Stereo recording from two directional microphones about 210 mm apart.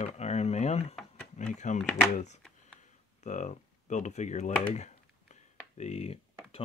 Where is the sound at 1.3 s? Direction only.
35° left (ahead or behind).